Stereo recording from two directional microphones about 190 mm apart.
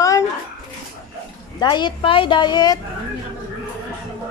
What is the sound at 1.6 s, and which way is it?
A man's voice, 25° left (ahead or behind).